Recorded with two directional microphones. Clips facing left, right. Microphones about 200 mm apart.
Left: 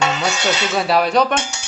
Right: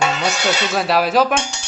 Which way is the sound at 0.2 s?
Centre (ahead or behind).